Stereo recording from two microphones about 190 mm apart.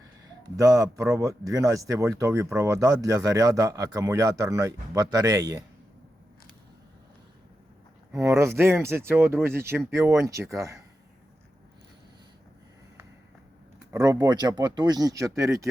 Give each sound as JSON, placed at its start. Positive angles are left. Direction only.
{"t": 0.4, "sound": "speech", "side_deg": -15}
{"t": 8.1, "sound": "speech", "side_deg": -15}
{"t": 13.9, "sound": "speech", "side_deg": -20}